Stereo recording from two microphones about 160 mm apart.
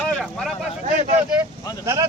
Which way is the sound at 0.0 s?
5° left (ahead or behind).